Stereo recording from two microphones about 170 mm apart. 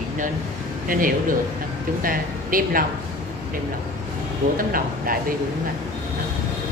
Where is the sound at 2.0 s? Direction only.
55° right (ahead or behind).